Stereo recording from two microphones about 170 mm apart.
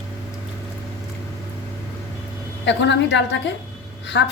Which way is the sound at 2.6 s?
90° left.